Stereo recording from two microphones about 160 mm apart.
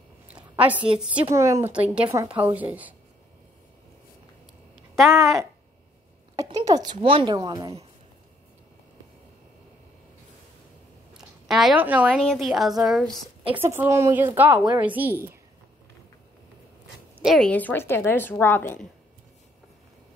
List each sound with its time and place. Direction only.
0.3 s a woman's voice: 10° right (ahead or behind)
1.2 s speech: 20° right (ahead or behind)
1.7 s speech: 5° right (ahead or behind)
4.7 s a sound: centre (ahead or behind)
5.1 s speech: 20° right (ahead or behind)
11.1 s a sound: centre (ahead or behind)
12.3 s a woman's voice: centre (ahead or behind)
13.7 s speech: 15° right (ahead or behind)
17.2 s a woman's voice: centre (ahead or behind)
17.5 s a woman's voice: 10° left (ahead or behind)